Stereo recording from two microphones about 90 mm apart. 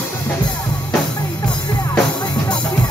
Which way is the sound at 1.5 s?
55° left (ahead or behind).